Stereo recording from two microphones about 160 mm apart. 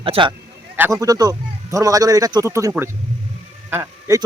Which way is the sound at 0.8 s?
20° right (ahead or behind).